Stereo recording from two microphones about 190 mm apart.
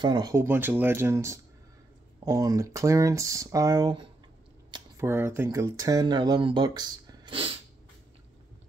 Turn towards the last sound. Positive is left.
turn(degrees=-25)  # may be behind; listen again after turning